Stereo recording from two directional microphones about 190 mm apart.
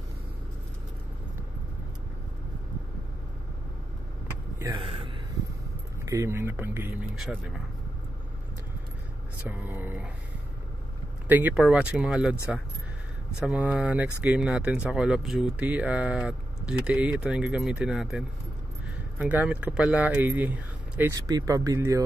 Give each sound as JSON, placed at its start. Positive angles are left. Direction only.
{"t": 4.7, "sound": "a sound", "side_deg": -30}
{"t": 6.0, "sound": "speech", "side_deg": -15}
{"t": 9.4, "sound": "speech", "side_deg": -10}
{"t": 11.2, "sound": "speech", "side_deg": -10}
{"t": 13.4, "sound": "speech", "side_deg": -5}